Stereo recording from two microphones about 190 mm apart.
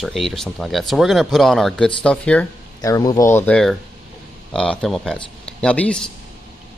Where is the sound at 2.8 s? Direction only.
20° left (ahead or behind).